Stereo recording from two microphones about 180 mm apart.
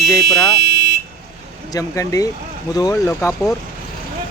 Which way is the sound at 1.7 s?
20° left (ahead or behind).